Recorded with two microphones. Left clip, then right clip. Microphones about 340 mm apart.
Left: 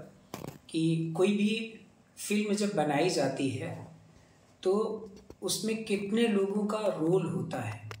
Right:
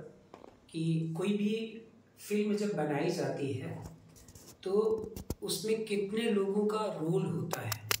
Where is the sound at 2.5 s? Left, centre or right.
Centre.